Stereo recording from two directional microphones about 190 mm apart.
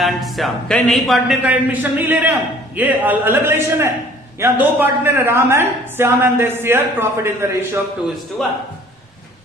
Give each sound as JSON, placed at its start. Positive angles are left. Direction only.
{"t": 0.0, "sound": "a man's voice", "side_deg": 0}
{"t": 8.4, "sound": "a man's voice", "side_deg": 5}